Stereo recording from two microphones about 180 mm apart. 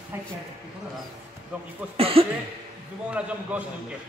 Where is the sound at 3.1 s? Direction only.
5° right (ahead or behind).